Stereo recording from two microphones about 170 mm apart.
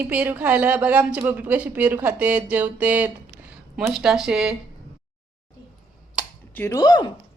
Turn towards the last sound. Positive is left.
turn(degrees=25)  # may be behind; listen again after turning